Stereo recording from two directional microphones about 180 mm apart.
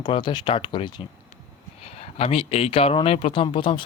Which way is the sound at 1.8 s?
35° left (ahead or behind).